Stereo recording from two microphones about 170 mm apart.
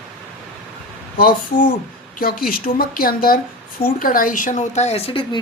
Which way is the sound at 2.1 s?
60° left (ahead or behind).